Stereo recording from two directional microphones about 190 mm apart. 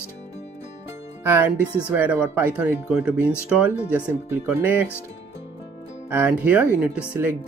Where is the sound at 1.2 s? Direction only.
10° right (ahead or behind).